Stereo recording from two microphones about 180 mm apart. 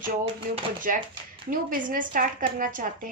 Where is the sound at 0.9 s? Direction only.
50° right (ahead or behind).